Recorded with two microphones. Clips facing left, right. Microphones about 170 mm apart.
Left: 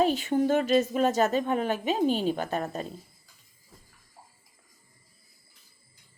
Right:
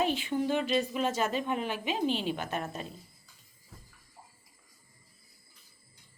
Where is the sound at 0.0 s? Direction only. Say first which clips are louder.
Left 5 dB; 40° left (ahead or behind).